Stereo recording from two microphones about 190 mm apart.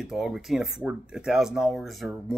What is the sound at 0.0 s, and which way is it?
Speech, centre (ahead or behind).